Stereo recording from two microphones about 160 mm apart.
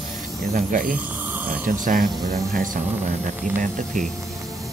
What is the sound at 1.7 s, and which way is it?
Speech, 55° right (ahead or behind).